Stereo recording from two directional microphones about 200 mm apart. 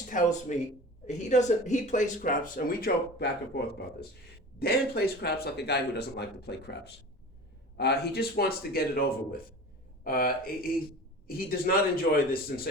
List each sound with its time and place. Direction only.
0.1 s speech: 40° left (ahead or behind)